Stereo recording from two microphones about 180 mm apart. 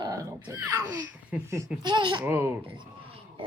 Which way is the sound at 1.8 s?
25° right (ahead or behind).